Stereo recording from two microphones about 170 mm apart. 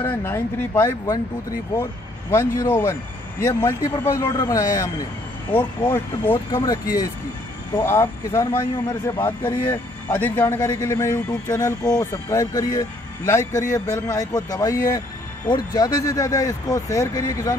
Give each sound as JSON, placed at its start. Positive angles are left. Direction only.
{"t": 0.0, "sound": "speech", "side_deg": 15}
{"t": 2.3, "sound": "speech", "side_deg": 15}